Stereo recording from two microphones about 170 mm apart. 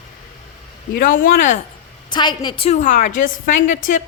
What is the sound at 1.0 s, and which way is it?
Speech, 55° left (ahead or behind).